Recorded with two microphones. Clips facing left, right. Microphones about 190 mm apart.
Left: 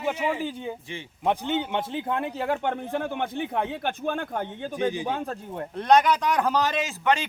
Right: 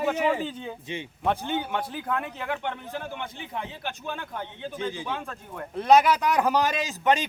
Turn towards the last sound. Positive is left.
turn(degrees=-15)  # may be behind; listen again after turning